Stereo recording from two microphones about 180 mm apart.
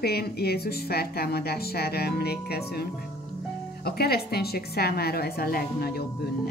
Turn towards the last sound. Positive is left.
turn(degrees=60)  # may be behind; listen again after turning